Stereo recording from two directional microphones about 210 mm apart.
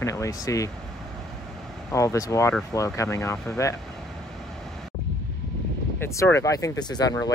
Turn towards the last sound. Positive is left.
turn(degrees=15)  # may be behind; listen again after turning